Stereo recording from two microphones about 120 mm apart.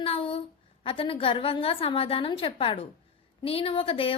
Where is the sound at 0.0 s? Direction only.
50° left (ahead or behind).